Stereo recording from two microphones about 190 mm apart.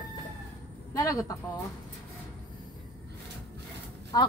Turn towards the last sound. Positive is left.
turn(degrees=20)  # may be behind; listen again after turning